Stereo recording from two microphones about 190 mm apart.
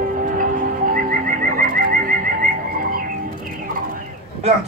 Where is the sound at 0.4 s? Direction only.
45° right (ahead or behind).